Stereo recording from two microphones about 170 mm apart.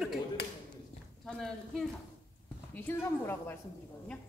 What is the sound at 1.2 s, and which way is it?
A woman's voice, 5° left (ahead or behind).